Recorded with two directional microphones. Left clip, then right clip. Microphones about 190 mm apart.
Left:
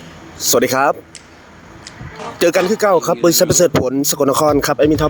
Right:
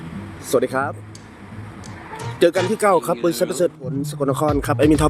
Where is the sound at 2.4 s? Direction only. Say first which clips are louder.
Left 3 dB; 30° left (ahead or behind).